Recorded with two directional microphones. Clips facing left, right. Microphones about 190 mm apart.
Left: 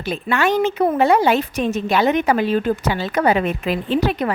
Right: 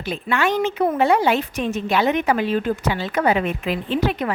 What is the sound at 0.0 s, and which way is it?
A woman's voice, 40° left (ahead or behind).